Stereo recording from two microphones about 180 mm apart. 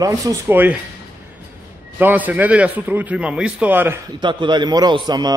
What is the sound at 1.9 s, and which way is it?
Speech, 10° right (ahead or behind).